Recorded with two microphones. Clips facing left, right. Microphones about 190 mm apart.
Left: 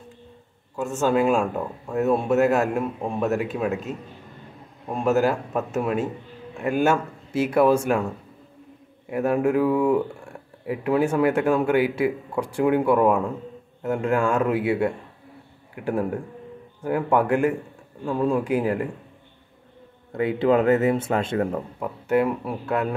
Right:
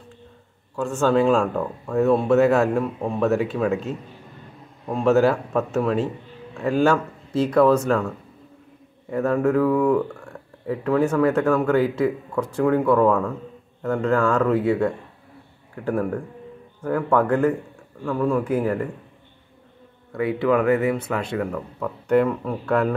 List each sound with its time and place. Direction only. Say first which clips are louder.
0.8 s speech: right 2 dB; 20° left (ahead or behind)
1.1 s a man's voice: right 2 dB; 5° left (ahead or behind)
4.9 s a man's voice: right 3 dB; 5° left (ahead or behind)
7.4 s speech: right 2 dB; 10° left (ahead or behind)
9.1 s speech: right 1 dB; 10° left (ahead or behind)
15.7 s speech: right 1 dB; 25° left (ahead or behind)
20.1 s speech: even; 25° left (ahead or behind)
21.4 s speech: left 2 dB; 35° left (ahead or behind)
21.7 s speech: right 3 dB; 10° left (ahead or behind)